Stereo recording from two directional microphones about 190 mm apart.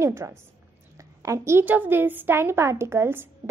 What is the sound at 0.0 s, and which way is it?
A woman's voice, 15° right (ahead or behind).